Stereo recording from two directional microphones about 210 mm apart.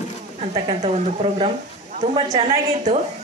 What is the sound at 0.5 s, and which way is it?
Speech, 30° right (ahead or behind).